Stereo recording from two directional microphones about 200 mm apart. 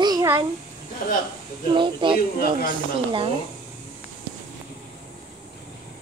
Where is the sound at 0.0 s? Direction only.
20° right (ahead or behind).